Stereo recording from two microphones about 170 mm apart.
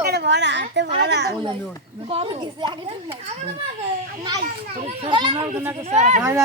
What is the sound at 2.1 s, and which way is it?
Speech, 35° right (ahead or behind).